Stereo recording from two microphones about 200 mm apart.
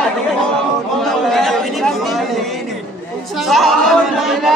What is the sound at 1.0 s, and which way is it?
Chatter, centre (ahead or behind).